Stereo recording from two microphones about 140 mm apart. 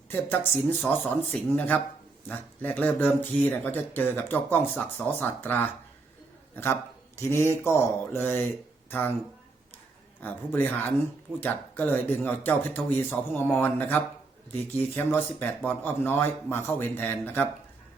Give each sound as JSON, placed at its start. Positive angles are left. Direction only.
{"t": 0.1, "sound": "speech", "side_deg": 15}
{"t": 7.2, "sound": "speech", "side_deg": 20}
{"t": 10.2, "sound": "speech", "side_deg": 15}